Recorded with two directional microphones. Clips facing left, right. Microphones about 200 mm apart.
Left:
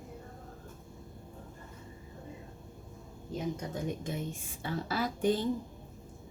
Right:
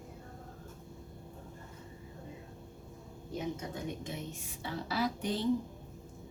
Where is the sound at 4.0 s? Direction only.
50° left (ahead or behind).